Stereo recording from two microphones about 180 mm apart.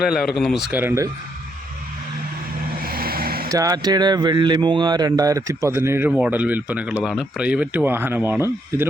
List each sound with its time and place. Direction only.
0.0 s speech: centre (ahead or behind)
2.8 s vehicle: 55° right (ahead or behind)
3.5 s speech: 20° right (ahead or behind)